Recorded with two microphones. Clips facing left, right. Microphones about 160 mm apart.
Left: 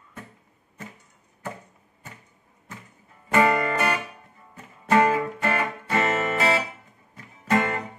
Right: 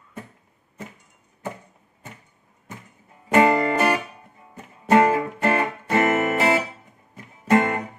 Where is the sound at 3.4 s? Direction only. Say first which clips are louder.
Right 3 dB; 20° right (ahead or behind).